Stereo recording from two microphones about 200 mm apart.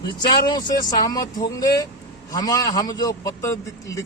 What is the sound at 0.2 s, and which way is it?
Speech, 20° left (ahead or behind).